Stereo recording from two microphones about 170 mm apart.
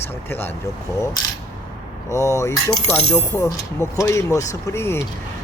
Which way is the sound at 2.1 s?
15° left (ahead or behind).